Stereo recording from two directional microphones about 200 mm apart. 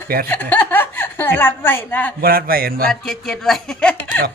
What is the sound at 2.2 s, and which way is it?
Speech, 50° right (ahead or behind).